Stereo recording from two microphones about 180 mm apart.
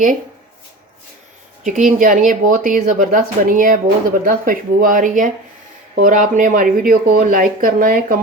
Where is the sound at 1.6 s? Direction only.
45° right (ahead or behind).